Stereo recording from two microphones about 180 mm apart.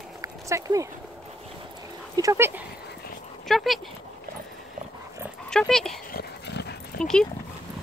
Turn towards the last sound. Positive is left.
turn(degrees=5)  # may be behind; listen again after turning